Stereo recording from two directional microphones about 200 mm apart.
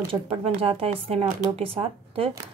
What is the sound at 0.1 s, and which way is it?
Speech, 30° right (ahead or behind).